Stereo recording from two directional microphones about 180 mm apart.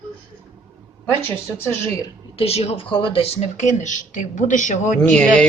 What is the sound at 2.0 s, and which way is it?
Speech, 35° left (ahead or behind).